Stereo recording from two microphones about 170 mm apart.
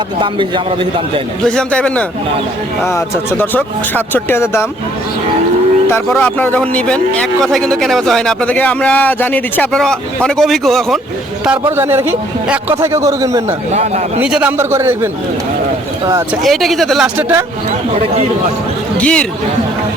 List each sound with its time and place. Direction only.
0.2 s a man's voice: 30° right (ahead or behind)
1.5 s a man's voice: 5° left (ahead or behind)
5.9 s a man's voice: 10° left (ahead or behind)
11.8 s a man's voice: 15° right (ahead or behind)
14.2 s a man's voice: 5° right (ahead or behind)
16.4 s a man's voice: centre (ahead or behind)
17.2 s a man's voice: 10° right (ahead or behind)
18.9 s speech: 5° left (ahead or behind)